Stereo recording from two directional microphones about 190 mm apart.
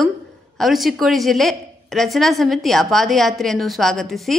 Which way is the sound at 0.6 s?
Centre (ahead or behind).